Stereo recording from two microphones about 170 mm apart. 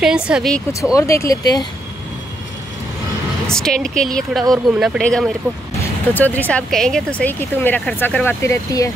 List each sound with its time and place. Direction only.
0.0 s speech: 5° right (ahead or behind)
0.9 s speech: 20° left (ahead or behind)
3.5 s speech: 5° left (ahead or behind)